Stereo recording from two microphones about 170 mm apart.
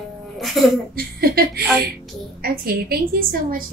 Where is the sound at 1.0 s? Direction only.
60° right (ahead or behind).